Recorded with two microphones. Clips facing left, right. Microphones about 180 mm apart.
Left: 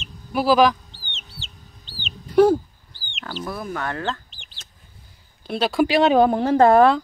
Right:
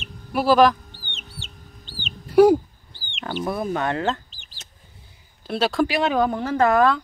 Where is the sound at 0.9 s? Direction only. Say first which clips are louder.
Right 2 dB; 55° right (ahead or behind).